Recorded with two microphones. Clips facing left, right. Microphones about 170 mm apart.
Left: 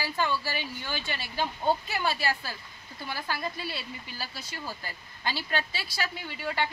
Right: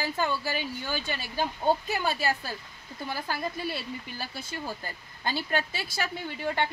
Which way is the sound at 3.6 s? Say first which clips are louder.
Right 4 dB; 50° right (ahead or behind).